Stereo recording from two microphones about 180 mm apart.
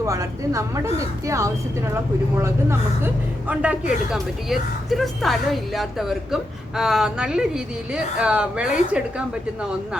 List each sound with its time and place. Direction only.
0.0 s speech: 15° right (ahead or behind)